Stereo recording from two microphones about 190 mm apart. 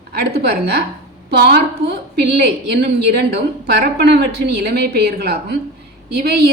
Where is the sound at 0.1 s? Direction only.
55° right (ahead or behind).